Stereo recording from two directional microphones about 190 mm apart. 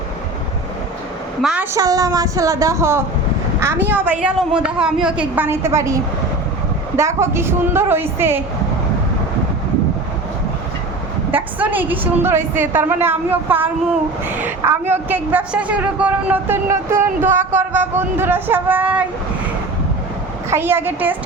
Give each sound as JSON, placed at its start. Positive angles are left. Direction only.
{"t": 1.4, "sound": "a woman's voice", "side_deg": -5}
{"t": 1.7, "sound": "a woman's voice", "side_deg": -20}
{"t": 11.3, "sound": "a woman's voice", "side_deg": -10}
{"t": 20.5, "sound": "a woman's voice", "side_deg": -10}